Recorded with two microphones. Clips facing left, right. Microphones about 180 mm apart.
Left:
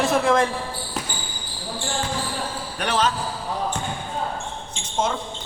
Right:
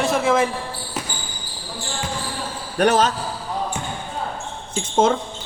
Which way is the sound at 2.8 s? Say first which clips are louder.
Right 6 dB; 45° right (ahead or behind).